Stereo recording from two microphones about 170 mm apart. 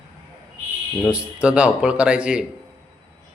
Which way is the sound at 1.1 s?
5° right (ahead or behind).